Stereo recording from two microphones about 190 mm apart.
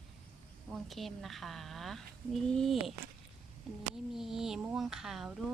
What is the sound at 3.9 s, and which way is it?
A woman's voice, centre (ahead or behind).